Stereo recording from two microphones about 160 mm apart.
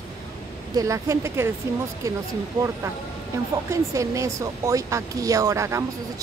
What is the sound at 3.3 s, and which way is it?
Speech, 20° right (ahead or behind).